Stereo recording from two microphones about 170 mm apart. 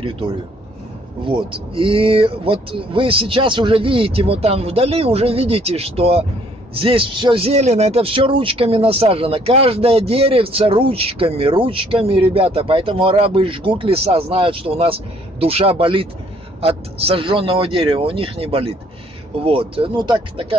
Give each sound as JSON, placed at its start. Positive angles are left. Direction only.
{"t": 1.2, "sound": "a man's voice", "side_deg": -30}